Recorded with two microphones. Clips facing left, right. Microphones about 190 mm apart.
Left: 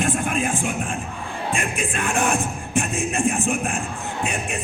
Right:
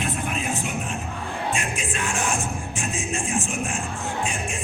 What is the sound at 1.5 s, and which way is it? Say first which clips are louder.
Music: left 5 dB; 55° left (ahead or behind).